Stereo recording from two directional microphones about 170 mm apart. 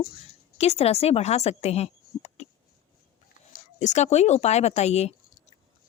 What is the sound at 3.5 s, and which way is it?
A woman's voice, 45° left (ahead or behind).